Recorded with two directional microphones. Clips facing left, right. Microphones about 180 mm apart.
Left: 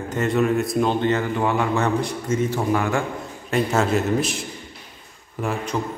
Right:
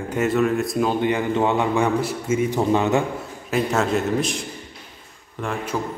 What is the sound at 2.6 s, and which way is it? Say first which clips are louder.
Speech: right 3 dB; 20° right (ahead or behind).